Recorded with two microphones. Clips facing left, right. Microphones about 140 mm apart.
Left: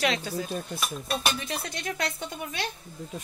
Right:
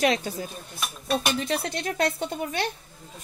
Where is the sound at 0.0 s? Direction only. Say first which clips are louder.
Right 4 dB; 45° right (ahead or behind).